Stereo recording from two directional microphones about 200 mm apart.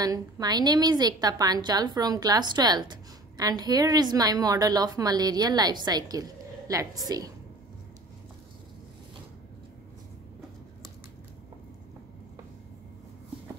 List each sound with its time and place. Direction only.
0.0 s a woman's voice: 20° right (ahead or behind)